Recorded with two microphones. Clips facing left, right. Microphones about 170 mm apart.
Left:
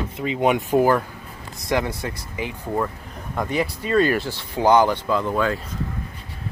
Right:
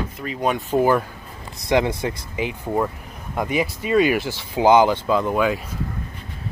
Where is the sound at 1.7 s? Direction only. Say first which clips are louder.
Right 4 dB; 20° right (ahead or behind).